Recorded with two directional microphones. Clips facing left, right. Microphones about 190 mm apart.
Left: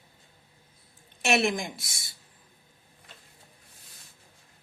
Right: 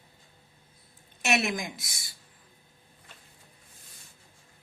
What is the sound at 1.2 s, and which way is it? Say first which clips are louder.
Speech: left 3 dB; 30° left (ahead or behind).